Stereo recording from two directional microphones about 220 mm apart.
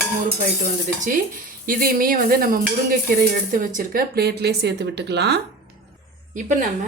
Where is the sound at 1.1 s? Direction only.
40° right (ahead or behind).